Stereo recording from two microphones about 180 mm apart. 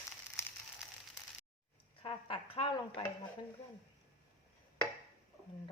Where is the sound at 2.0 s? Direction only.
30° left (ahead or behind).